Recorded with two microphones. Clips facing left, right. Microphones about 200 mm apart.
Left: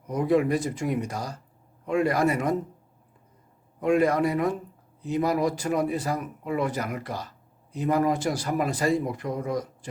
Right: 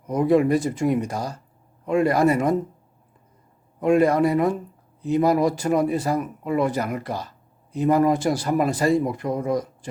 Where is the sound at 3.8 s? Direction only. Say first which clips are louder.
Right 4 dB; 30° right (ahead or behind).